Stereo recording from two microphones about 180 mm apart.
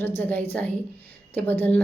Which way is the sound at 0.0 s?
10° left (ahead or behind).